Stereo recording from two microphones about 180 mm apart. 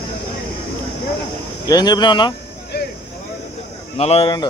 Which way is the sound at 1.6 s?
20° left (ahead or behind).